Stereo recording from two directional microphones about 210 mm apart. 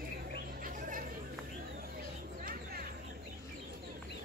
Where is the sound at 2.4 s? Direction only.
40° right (ahead or behind).